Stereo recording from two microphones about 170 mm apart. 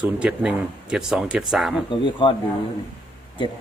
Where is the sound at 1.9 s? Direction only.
30° left (ahead or behind).